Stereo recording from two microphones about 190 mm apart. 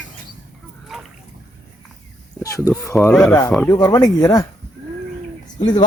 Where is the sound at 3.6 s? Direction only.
20° left (ahead or behind).